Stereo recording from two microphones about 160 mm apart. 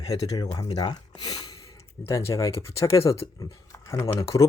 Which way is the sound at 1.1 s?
25° left (ahead or behind).